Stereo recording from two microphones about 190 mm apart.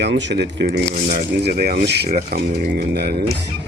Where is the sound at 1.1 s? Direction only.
50° right (ahead or behind).